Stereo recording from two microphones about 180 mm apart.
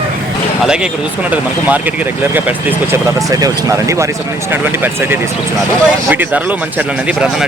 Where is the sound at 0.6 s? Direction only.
5° right (ahead or behind).